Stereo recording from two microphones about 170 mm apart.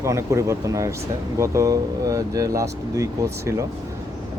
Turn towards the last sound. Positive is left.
turn(degrees=-15)  # may be behind; listen again after turning